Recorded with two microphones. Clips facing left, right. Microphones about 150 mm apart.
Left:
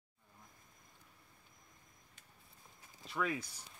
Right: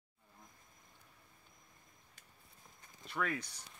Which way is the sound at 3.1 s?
5° left (ahead or behind).